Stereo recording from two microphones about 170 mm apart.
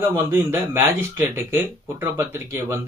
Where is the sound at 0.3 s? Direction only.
15° right (ahead or behind).